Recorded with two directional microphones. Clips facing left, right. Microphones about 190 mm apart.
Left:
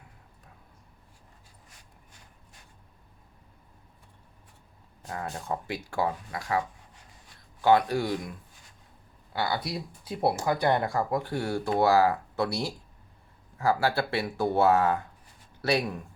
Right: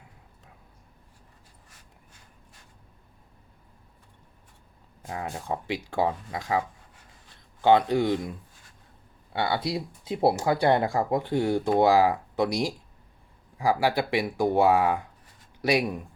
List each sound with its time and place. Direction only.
5.0 s speech: 15° right (ahead or behind)
9.3 s speech: 25° right (ahead or behind)